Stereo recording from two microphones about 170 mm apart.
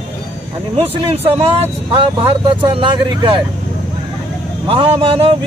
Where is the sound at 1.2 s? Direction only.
35° right (ahead or behind).